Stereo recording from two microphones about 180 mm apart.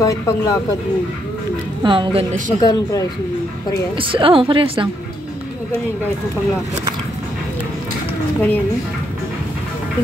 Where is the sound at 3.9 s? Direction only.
30° right (ahead or behind).